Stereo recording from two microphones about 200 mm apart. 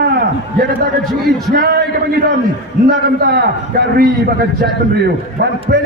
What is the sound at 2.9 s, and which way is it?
A man's voice, 55° right (ahead or behind).